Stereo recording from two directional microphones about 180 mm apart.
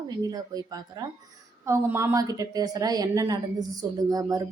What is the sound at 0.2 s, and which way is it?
A woman's voice, 20° right (ahead or behind).